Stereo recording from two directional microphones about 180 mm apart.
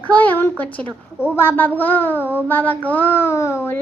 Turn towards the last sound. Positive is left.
turn(degrees=15)  # may be behind; listen again after turning